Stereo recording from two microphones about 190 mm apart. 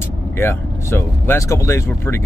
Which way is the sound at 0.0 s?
15° left (ahead or behind).